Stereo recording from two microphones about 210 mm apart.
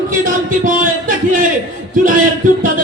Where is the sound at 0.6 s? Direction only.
40° right (ahead or behind).